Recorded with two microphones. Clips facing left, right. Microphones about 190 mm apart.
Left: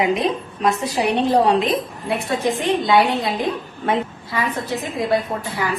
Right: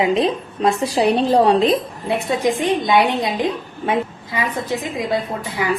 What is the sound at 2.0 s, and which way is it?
A woman's voice, 15° right (ahead or behind).